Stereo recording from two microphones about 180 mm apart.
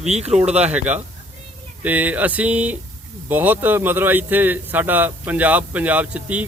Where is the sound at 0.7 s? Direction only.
10° right (ahead or behind).